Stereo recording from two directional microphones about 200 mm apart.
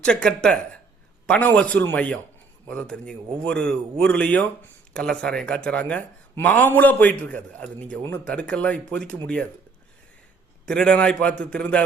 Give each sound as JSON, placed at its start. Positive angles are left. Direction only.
{"t": 0.0, "sound": "a man's voice", "side_deg": 5}
{"t": 10.7, "sound": "a man's voice", "side_deg": 5}